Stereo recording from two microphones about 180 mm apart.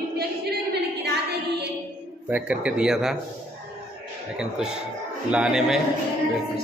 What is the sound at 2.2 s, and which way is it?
Speech, 10° right (ahead or behind).